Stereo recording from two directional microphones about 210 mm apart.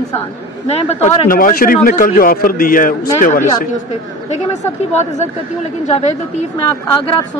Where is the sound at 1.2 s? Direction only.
40° left (ahead or behind).